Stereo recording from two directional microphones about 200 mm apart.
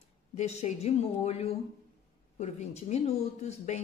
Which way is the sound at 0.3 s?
35° left (ahead or behind).